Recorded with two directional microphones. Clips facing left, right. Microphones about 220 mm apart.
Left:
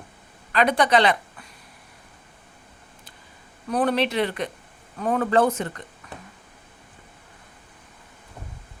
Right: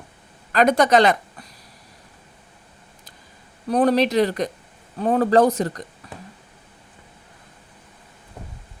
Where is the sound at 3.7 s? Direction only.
35° right (ahead or behind).